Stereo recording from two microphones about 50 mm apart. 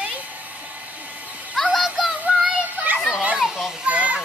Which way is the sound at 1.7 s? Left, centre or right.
Centre.